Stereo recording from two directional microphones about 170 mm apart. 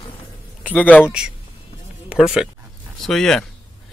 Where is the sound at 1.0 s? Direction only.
5° right (ahead or behind).